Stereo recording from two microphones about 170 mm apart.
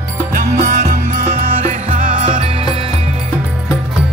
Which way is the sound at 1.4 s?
50° right (ahead or behind).